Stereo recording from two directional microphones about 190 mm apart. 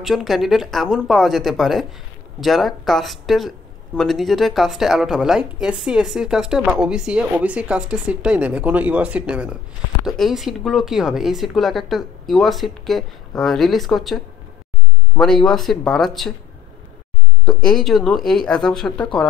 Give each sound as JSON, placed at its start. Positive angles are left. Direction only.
{"t": 0.0, "sound": "speech", "side_deg": 0}
{"t": 17.5, "sound": "speech", "side_deg": 5}